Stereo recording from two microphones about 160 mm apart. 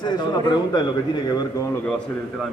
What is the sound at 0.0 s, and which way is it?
A man's voice, 25° left (ahead or behind).